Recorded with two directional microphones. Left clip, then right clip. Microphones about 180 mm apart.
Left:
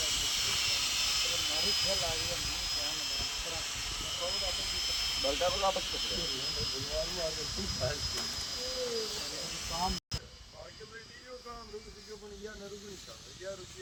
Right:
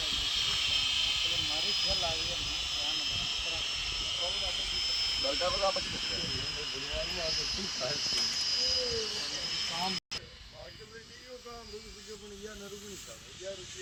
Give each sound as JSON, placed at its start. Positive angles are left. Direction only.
{"t": 0.0, "sound": "vehicle", "side_deg": 10}
{"t": 5.2, "sound": "speech", "side_deg": 15}
{"t": 5.7, "sound": "speech", "side_deg": -25}